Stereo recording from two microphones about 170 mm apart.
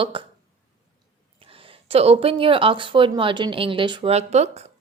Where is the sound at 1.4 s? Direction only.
30° right (ahead or behind).